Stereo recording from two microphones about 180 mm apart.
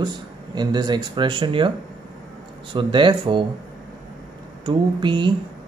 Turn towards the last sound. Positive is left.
turn(degrees=-25)  # may be behind; listen again after turning